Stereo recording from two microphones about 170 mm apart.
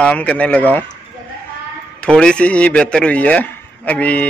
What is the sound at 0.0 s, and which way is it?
Speech, 5° left (ahead or behind).